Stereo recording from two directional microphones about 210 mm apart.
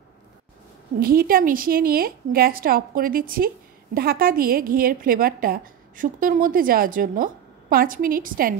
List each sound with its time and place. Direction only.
0.9 s a woman's voice: 45° right (ahead or behind)